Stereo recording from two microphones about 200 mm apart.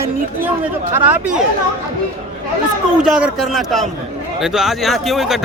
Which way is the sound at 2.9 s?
5° right (ahead or behind).